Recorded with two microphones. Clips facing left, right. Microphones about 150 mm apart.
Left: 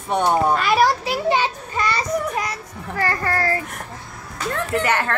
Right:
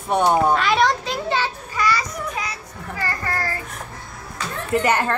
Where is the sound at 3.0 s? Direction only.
55° left (ahead or behind).